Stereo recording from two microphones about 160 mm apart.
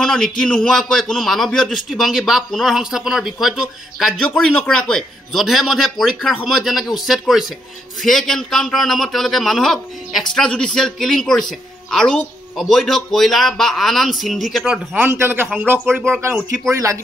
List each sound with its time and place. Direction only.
0.0 s a man's voice: 5° left (ahead or behind); by 17.0 s 20° right (ahead or behind)